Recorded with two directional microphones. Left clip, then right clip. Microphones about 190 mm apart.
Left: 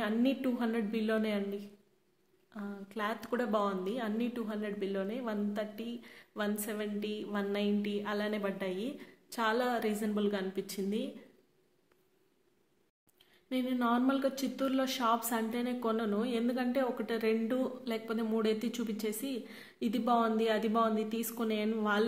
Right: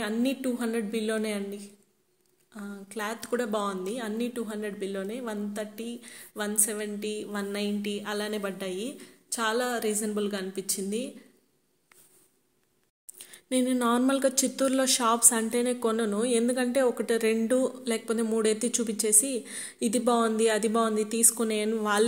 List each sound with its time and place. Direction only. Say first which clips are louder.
0.0 s a woman's voice: right 3 dB; 15° right (ahead or behind)
13.2 s speech: right 8 dB; 40° right (ahead or behind)